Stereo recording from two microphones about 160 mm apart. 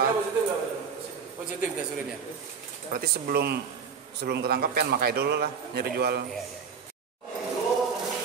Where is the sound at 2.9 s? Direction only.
75° right (ahead or behind).